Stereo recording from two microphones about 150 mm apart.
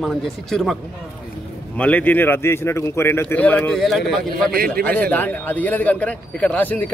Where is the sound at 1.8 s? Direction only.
10° left (ahead or behind).